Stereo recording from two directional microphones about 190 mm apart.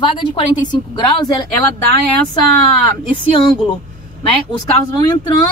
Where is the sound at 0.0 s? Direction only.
25° left (ahead or behind).